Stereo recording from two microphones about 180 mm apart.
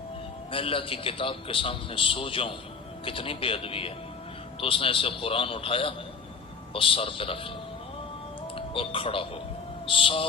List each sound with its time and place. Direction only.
0.5 s a man's voice: 30° left (ahead or behind)
8.5 s speech: 30° left (ahead or behind)
9.8 s music: 30° left (ahead or behind)